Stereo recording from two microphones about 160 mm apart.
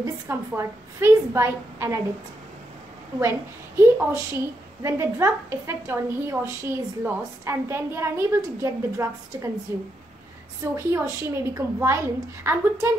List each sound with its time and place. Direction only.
0.0 s a woman's voice: 15° right (ahead or behind)
3.2 s a woman's voice: 15° right (ahead or behind)
10.6 s a woman's voice: 15° right (ahead or behind)